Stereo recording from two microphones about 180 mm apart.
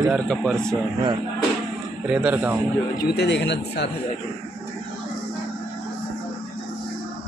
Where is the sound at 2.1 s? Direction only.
10° right (ahead or behind).